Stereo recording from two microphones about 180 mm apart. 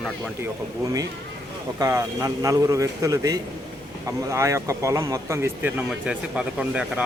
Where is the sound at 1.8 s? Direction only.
15° right (ahead or behind).